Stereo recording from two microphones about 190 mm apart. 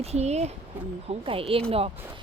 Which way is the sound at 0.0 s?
35° right (ahead or behind).